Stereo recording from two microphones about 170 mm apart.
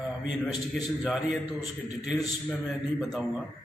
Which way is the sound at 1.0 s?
Centre (ahead or behind).